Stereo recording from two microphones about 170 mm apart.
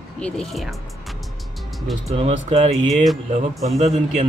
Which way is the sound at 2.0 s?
40° right (ahead or behind).